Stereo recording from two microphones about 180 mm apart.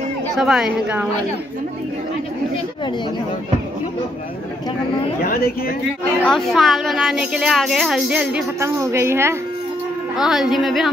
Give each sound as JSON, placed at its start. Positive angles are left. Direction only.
{"t": 0.4, "sound": "speech", "side_deg": -5}
{"t": 5.2, "sound": "a woman's voice", "side_deg": 55}
{"t": 6.2, "sound": "speech", "side_deg": 0}
{"t": 8.5, "sound": "speech", "side_deg": -15}
{"t": 10.1, "sound": "speech", "side_deg": 0}